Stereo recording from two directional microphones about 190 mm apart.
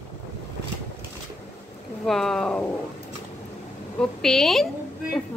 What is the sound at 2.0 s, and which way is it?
Speech, centre (ahead or behind).